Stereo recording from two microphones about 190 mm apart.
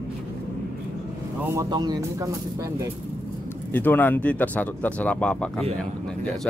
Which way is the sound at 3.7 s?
10° left (ahead or behind).